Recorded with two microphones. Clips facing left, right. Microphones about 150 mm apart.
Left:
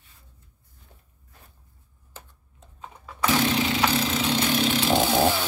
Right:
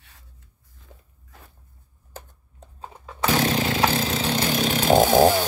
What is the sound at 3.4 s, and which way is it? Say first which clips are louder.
Chainsaw: right 2 dB; 40° right (ahead or behind).